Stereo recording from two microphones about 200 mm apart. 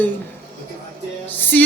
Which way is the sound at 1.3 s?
10° left (ahead or behind).